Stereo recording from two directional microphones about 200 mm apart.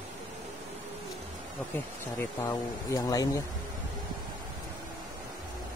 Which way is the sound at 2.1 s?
15° left (ahead or behind).